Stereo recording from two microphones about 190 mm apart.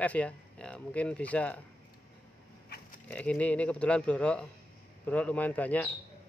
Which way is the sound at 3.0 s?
5° left (ahead or behind).